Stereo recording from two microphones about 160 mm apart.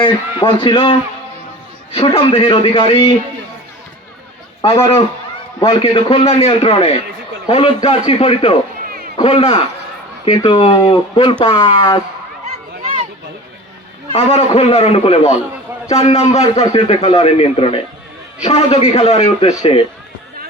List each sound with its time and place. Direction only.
0.0 s a man's voice: 30° left (ahead or behind)
4.6 s a man's voice: 35° left (ahead or behind)
14.1 s a man's voice: 40° left (ahead or behind)